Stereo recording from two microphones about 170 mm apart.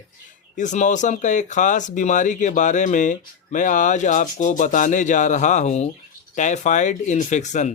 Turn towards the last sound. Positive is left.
turn(degrees=45)  # may be behind; listen again after turning